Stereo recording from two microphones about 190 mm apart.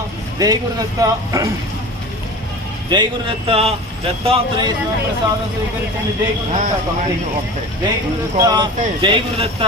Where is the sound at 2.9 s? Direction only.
25° right (ahead or behind).